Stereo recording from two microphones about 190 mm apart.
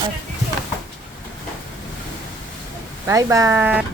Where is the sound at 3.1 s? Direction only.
15° right (ahead or behind).